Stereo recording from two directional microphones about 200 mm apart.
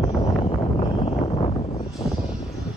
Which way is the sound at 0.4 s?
25° left (ahead or behind).